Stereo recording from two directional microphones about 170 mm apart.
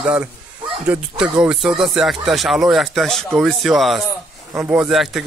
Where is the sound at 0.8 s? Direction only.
5° right (ahead or behind).